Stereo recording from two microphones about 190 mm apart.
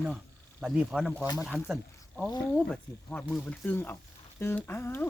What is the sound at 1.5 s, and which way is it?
Speech, 10° left (ahead or behind).